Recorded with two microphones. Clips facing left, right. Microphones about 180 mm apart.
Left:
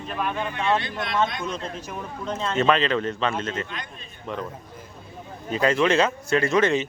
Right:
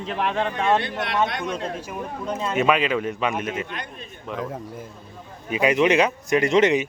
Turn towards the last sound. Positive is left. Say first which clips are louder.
# right 2 dB
turn(degrees=-20)  # may be behind; listen again after turning